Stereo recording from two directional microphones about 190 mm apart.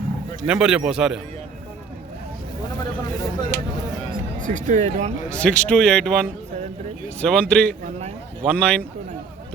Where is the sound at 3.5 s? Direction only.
65° left (ahead or behind).